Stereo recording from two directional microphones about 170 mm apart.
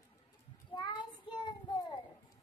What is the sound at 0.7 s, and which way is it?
Child singing, 25° left (ahead or behind).